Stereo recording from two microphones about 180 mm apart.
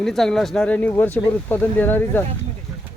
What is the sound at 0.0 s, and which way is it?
Speech, centre (ahead or behind).